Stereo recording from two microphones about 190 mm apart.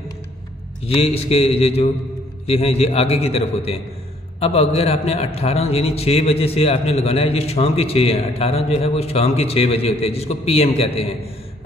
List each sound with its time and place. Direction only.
0.8 s a man's voice: 30° left (ahead or behind)